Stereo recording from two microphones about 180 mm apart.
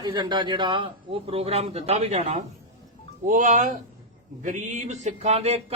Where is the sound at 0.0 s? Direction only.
25° right (ahead or behind).